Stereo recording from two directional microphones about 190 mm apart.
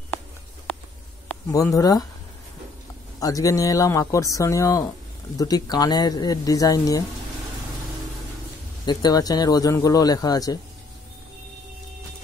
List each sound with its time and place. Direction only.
1.5 s a man's voice: 15° left (ahead or behind)
3.2 s a man's voice: 20° left (ahead or behind)
8.8 s a man's voice: 20° left (ahead or behind)